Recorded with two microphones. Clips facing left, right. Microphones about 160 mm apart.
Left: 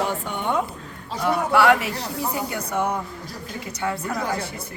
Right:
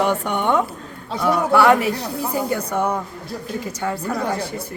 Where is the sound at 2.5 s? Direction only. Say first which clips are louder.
Right 4 dB; 55° right (ahead or behind).